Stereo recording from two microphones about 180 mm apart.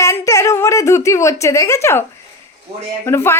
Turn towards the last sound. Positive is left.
turn(degrees=15)  # may be behind; listen again after turning